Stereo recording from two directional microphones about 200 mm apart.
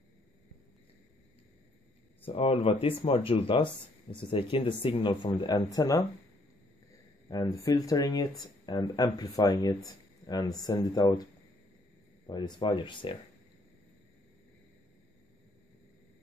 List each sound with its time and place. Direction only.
2.2 s speech: 30° left (ahead or behind)
7.2 s speech: 15° left (ahead or behind)
12.3 s speech: 20° left (ahead or behind)